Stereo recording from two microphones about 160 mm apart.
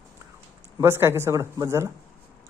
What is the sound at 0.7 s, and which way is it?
Speech, 15° right (ahead or behind).